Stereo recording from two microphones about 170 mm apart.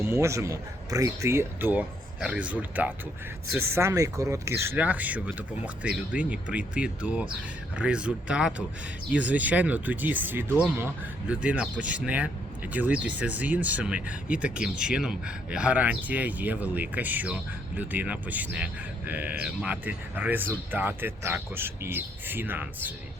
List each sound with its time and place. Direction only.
0.0 s speech: 15° right (ahead or behind)